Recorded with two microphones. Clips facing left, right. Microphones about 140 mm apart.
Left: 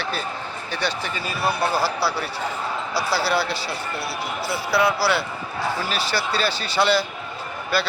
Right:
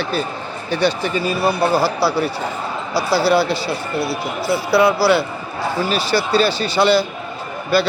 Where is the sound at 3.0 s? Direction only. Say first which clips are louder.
Right 8 dB; centre (ahead or behind).